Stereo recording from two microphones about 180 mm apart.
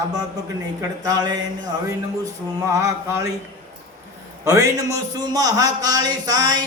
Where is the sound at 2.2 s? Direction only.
15° right (ahead or behind).